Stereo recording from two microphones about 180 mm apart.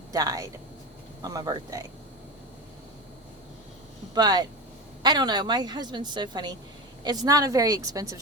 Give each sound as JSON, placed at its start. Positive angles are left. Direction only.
{"t": 0.1, "sound": "a woman's voice", "side_deg": -20}
{"t": 4.1, "sound": "a woman's voice", "side_deg": -20}